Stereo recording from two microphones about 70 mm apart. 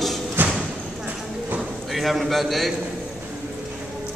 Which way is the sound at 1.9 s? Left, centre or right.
Centre.